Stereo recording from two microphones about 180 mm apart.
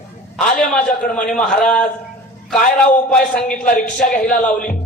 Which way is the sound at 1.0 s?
5° left (ahead or behind).